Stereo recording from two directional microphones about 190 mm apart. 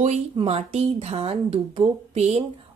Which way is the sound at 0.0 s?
35° right (ahead or behind).